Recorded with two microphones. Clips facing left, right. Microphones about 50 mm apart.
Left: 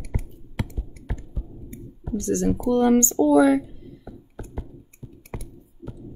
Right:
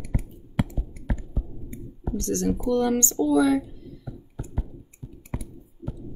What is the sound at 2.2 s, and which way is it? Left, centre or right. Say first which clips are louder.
Speech: left 3 dB; left.